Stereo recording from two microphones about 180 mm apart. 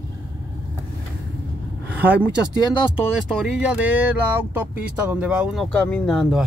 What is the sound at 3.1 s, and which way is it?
Speech, 5° right (ahead or behind).